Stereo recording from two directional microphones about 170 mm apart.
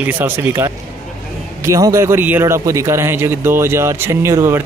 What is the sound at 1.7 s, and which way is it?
Speech, 20° right (ahead or behind).